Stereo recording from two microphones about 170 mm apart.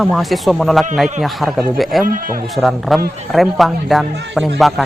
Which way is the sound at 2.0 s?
55° right (ahead or behind).